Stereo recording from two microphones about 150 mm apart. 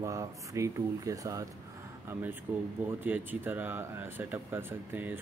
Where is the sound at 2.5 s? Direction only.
10° right (ahead or behind).